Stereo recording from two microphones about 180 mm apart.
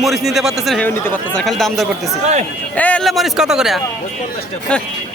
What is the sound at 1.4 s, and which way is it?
Speech, centre (ahead or behind).